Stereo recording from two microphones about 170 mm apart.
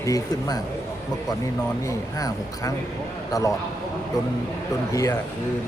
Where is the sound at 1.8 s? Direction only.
20° left (ahead or behind).